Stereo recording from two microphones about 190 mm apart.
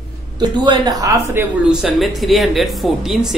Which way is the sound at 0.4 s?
25° right (ahead or behind).